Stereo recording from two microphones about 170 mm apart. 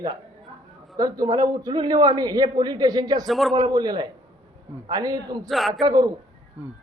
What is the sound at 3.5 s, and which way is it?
A man's voice, 25° right (ahead or behind).